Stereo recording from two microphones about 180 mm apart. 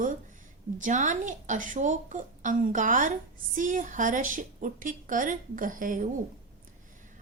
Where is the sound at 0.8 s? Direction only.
45° right (ahead or behind).